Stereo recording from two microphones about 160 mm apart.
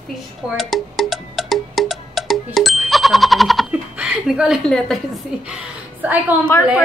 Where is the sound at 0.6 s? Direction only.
Centre (ahead or behind).